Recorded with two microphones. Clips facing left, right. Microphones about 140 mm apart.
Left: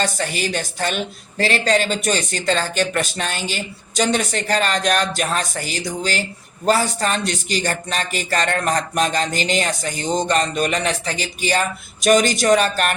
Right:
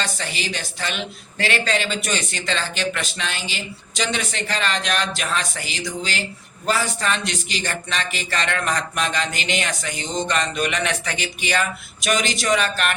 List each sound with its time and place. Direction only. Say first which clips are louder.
0.0 s a woman's voice: left 6 dB; 45° left (ahead or behind)